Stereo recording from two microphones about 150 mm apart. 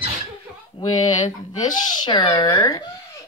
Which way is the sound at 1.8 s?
30° left (ahead or behind).